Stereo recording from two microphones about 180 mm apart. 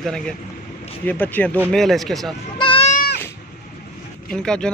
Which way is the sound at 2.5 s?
30° left (ahead or behind).